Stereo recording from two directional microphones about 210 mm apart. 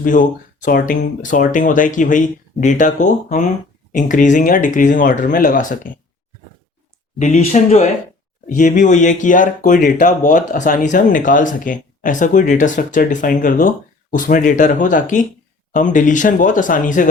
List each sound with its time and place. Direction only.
0.0 s speech: 40° left (ahead or behind)
7.2 s speech: 35° left (ahead or behind)